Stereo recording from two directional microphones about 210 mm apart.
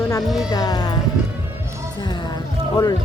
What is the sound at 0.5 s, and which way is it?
Speech, 20° left (ahead or behind).